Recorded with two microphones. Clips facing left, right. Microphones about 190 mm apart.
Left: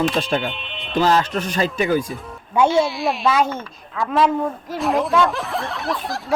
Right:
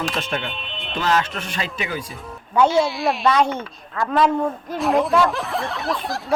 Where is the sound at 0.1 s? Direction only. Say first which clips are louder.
Left 5 dB; 30° left (ahead or behind).